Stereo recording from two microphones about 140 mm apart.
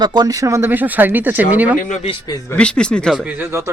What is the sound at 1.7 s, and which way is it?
Speech, 70° left (ahead or behind).